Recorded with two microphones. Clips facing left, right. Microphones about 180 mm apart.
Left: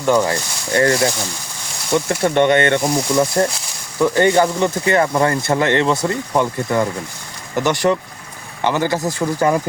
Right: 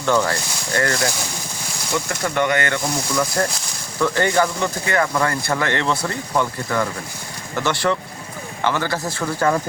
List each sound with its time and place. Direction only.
0.0 s speech: 15° left (ahead or behind)